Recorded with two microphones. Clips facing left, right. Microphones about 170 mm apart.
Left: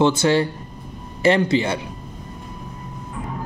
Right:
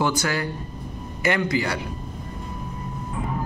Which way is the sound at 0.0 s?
25° left (ahead or behind).